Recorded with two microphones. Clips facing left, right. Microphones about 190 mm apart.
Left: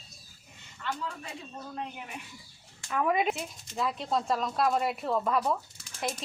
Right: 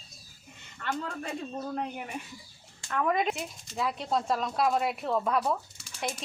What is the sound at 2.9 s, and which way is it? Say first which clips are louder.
Speech: even; 5° left (ahead or behind).